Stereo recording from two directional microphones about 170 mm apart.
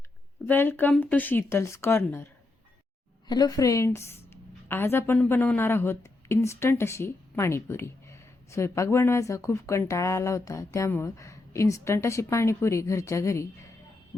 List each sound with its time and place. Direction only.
0.4 s a woman's voice: 10° left (ahead or behind)
3.2 s a woman's voice: 25° left (ahead or behind)